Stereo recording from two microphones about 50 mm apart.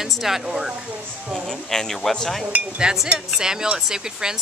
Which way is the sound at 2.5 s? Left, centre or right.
Centre.